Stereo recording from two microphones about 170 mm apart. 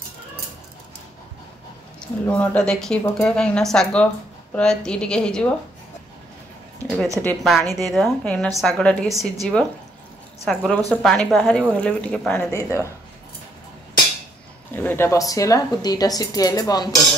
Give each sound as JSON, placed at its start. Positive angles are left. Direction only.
{"t": 2.0, "sound": "speech", "side_deg": 5}
{"t": 7.2, "sound": "speech", "side_deg": 5}
{"t": 12.4, "sound": "speech", "side_deg": 20}
{"t": 14.7, "sound": "speech", "side_deg": 10}